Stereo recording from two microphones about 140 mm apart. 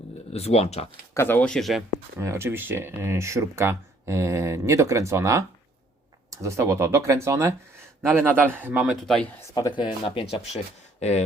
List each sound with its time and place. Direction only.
0.3 s speech: 50° left (ahead or behind)
1.1 s speech: 15° left (ahead or behind)
2.1 s a man's voice: 20° right (ahead or behind)
9.0 s speech: 5° left (ahead or behind)
9.6 s speech: 30° left (ahead or behind)